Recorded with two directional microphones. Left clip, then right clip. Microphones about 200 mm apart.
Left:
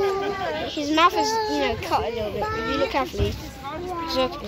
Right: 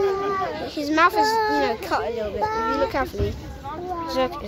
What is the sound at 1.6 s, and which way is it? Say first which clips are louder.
Speech: even; centre (ahead or behind).